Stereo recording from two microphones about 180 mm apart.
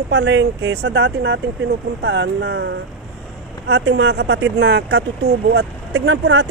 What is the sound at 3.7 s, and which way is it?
Speech, 70° right (ahead or behind).